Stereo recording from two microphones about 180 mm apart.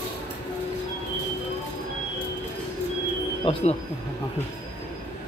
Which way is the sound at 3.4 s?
35° left (ahead or behind).